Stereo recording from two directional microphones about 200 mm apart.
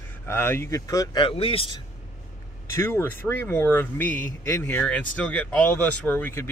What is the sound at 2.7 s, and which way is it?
Speech, 10° left (ahead or behind).